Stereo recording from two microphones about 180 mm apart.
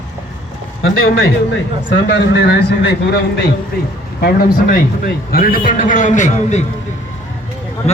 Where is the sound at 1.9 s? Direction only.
75° left (ahead or behind).